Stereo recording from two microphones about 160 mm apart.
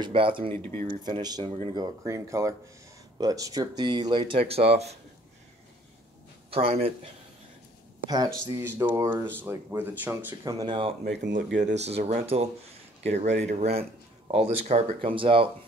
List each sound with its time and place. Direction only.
0.0 s speech: 30° right (ahead or behind)
0.6 s speech: 15° left (ahead or behind)
0.8 s speech: 30° right (ahead or behind)
2.0 s speech: 20° right (ahead or behind); by 4.9 s 40° right (ahead or behind)
6.5 s speech: 40° right (ahead or behind)
8.1 s speech: 25° right (ahead or behind)
10.6 s speech: 30° right (ahead or behind)
11.1 s speech: 90° right
11.6 s speech: 45° right (ahead or behind)
15.0 s speech: 35° right (ahead or behind)